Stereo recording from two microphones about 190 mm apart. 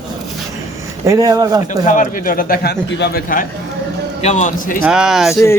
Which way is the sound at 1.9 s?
45° left (ahead or behind).